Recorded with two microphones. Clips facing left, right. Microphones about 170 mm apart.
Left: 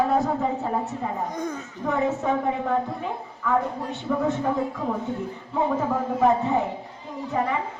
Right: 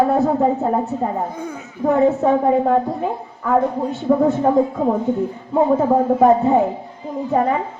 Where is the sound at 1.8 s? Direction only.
35° right (ahead or behind).